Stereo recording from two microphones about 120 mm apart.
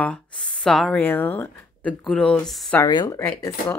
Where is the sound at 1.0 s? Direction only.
15° left (ahead or behind).